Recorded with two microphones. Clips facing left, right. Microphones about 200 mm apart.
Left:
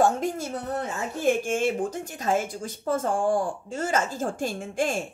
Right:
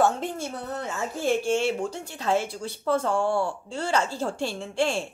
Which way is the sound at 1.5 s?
50° left (ahead or behind).